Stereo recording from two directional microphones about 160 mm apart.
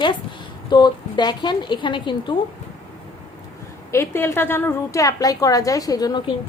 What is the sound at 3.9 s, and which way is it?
A woman's voice, 15° left (ahead or behind).